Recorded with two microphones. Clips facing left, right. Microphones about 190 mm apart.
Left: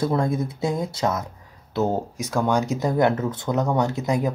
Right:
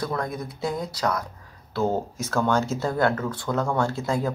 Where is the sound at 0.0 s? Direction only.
25° left (ahead or behind).